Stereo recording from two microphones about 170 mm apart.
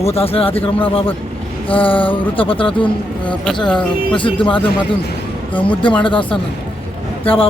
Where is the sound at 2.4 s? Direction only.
30° left (ahead or behind).